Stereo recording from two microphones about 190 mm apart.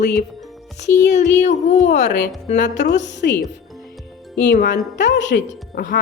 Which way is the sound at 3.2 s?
55° left (ahead or behind).